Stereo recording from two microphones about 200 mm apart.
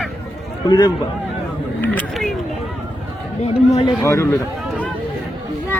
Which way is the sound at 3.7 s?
30° left (ahead or behind).